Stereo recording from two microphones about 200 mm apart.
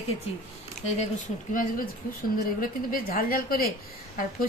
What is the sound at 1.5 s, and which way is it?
A woman's voice, 45° left (ahead or behind).